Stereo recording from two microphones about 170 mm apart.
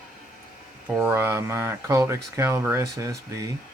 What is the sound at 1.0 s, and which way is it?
Speech, 10° right (ahead or behind).